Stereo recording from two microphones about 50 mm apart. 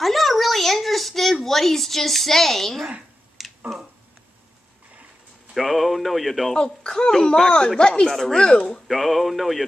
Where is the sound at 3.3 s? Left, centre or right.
Centre.